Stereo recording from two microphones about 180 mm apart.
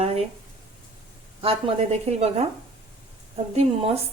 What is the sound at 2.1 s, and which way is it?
Speech, 35° right (ahead or behind).